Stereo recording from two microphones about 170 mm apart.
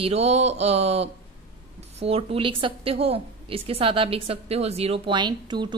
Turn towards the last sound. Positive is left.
turn(degrees=-25)  # may be behind; listen again after turning